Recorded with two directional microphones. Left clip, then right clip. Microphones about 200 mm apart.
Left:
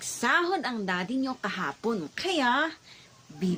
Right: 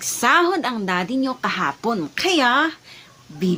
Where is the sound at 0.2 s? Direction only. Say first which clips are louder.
Right 9 dB; 20° right (ahead or behind).